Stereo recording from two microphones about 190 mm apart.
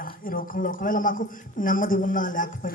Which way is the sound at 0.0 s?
50° left (ahead or behind).